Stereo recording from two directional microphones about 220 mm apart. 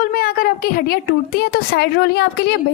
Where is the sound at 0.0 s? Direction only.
40° left (ahead or behind).